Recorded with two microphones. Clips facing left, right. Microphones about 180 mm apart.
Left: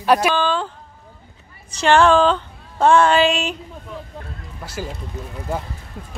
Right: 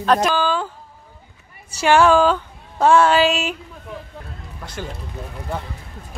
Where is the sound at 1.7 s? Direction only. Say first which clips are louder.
Even; 10° right (ahead or behind).